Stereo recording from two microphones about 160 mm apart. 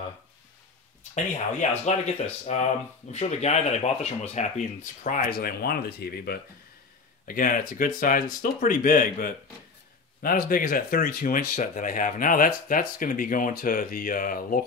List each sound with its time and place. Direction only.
1.1 s speech: 45° left (ahead or behind); by 6.4 s 80° left
7.2 s speech: 60° left (ahead or behind)